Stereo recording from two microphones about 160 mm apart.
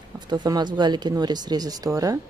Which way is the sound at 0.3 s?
25° right (ahead or behind).